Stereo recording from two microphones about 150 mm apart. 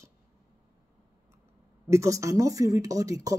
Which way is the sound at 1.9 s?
20° right (ahead or behind).